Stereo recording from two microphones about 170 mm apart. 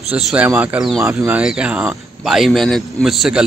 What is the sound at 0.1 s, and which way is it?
A man's voice, 5° right (ahead or behind).